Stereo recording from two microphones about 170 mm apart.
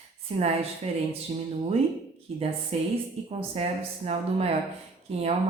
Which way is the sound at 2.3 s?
35° right (ahead or behind).